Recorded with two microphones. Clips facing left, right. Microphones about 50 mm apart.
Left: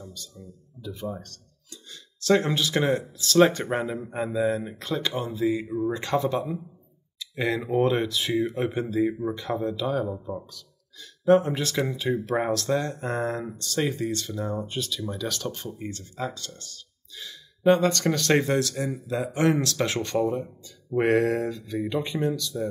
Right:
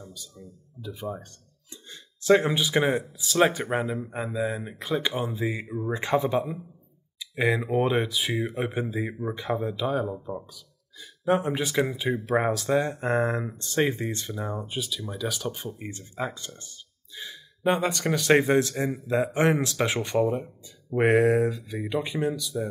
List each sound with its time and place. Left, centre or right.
0.0 s speech: centre
10.0 s speech: centre
10.4 s speech: centre